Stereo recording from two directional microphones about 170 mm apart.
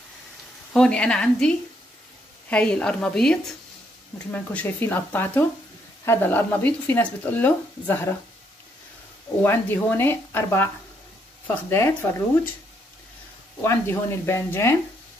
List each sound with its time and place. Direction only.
0.7 s speech: 5° left (ahead or behind)
2.5 s speech: 5° left (ahead or behind)
9.4 s speech: 10° left (ahead or behind)
11.7 s speech: 15° left (ahead or behind)
13.6 s speech: 15° left (ahead or behind)